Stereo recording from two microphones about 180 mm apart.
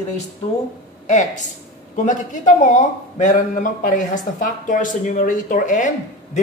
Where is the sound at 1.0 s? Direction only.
40° left (ahead or behind).